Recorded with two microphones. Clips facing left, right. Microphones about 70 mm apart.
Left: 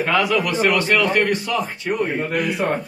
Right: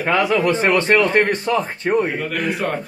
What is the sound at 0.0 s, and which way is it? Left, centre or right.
A man's voice, right.